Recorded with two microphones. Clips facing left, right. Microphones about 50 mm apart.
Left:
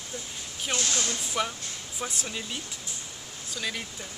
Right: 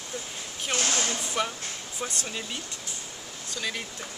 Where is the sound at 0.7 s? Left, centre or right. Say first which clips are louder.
Right 2 dB; right.